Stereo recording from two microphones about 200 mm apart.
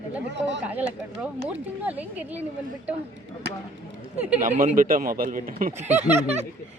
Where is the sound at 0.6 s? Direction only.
5° right (ahead or behind).